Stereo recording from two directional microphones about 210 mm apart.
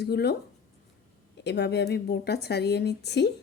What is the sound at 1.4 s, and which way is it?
A woman's voice, 55° left (ahead or behind).